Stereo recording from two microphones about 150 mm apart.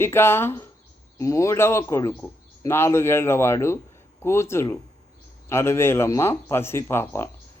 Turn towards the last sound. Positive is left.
turn(degrees=15)  # may be behind; listen again after turning